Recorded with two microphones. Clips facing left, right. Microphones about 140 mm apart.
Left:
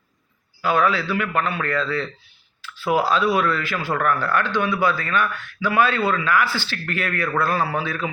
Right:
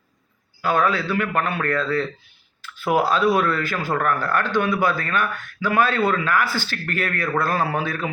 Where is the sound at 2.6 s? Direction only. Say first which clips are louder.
Even; 50° right (ahead or behind).